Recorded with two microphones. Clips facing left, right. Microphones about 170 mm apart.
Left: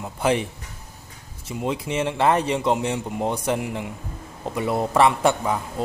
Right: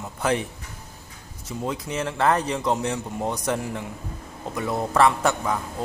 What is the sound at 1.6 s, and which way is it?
Speech, 25° left (ahead or behind).